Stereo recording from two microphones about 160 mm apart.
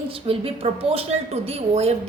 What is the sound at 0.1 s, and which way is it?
A woman's voice, 35° right (ahead or behind).